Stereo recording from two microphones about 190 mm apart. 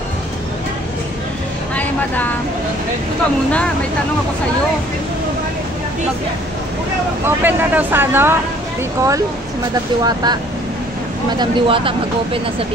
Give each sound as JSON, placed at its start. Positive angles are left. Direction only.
{"t": 1.8, "sound": "speech", "side_deg": 10}
{"t": 7.2, "sound": "speech", "side_deg": -10}
{"t": 10.0, "sound": "speech", "side_deg": -20}